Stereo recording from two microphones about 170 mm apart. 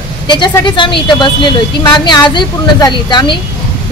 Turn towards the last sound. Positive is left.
turn(degrees=25)  # may be behind; listen again after turning